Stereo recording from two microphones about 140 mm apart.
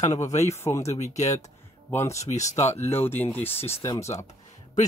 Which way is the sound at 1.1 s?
55° left (ahead or behind).